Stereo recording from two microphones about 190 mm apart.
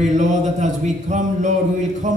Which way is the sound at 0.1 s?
40° right (ahead or behind).